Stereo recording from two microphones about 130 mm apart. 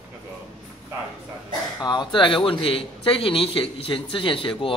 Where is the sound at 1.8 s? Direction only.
35° left (ahead or behind).